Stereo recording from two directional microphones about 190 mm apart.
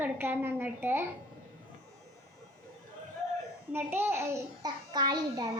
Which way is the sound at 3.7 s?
10° right (ahead or behind).